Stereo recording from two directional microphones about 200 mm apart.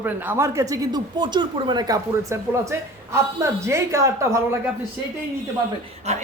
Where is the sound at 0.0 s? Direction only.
10° right (ahead or behind).